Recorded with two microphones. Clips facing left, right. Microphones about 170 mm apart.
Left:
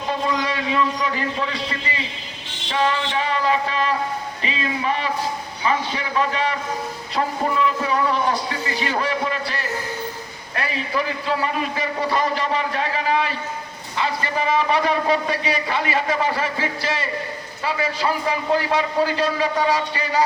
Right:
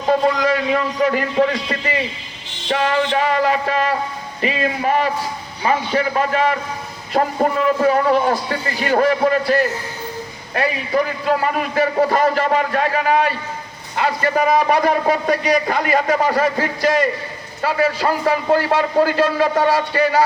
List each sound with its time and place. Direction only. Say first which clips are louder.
0.4 s a man's voice: right 4 dB; 45° right (ahead or behind)
2.6 s a man's voice: right 4 dB; 45° right (ahead or behind)
10.9 s a man's voice: right 5 dB; 45° right (ahead or behind)